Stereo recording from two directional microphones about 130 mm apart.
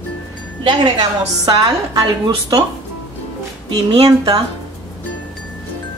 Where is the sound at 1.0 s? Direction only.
35° right (ahead or behind).